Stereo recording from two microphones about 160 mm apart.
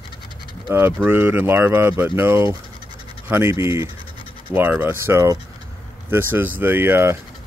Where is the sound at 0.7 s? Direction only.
15° right (ahead or behind).